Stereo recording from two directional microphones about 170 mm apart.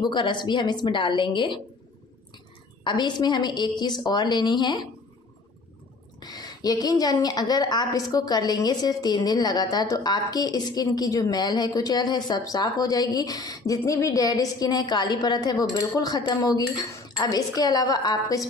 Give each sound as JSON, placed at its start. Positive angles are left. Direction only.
{"t": 0.0, "sound": "a woman's voice", "side_deg": 25}
{"t": 2.8, "sound": "a woman's voice", "side_deg": 25}
{"t": 6.1, "sound": "a woman's voice", "side_deg": 25}